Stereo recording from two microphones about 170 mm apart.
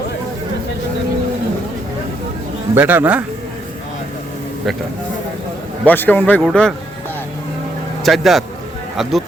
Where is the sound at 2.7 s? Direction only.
10° right (ahead or behind).